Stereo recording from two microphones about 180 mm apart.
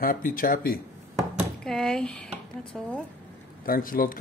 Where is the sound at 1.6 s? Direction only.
5° left (ahead or behind).